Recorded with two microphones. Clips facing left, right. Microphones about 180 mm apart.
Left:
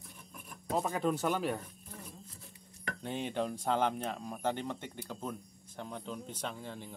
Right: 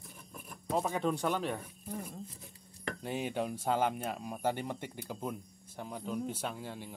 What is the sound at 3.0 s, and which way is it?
Speech, 5° right (ahead or behind).